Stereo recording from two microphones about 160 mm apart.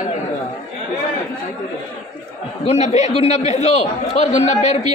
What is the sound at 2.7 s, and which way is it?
A man's voice, 45° left (ahead or behind).